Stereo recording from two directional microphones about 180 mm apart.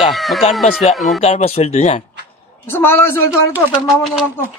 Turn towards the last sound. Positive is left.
turn(degrees=0)  # may be behind; listen again after turning